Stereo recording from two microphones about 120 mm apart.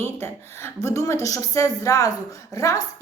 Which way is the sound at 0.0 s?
20° left (ahead or behind).